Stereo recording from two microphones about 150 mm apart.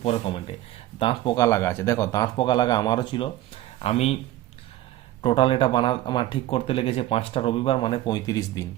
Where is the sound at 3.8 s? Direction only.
45° left (ahead or behind).